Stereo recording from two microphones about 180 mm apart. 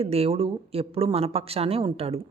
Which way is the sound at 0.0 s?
35° right (ahead or behind).